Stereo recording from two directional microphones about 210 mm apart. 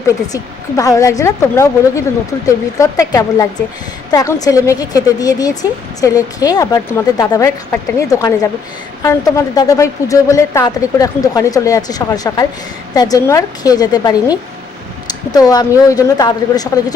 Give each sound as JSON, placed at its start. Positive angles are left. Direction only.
{"t": 0.3, "sound": "a woman's voice", "side_deg": 15}
{"t": 15.3, "sound": "a woman's voice", "side_deg": 20}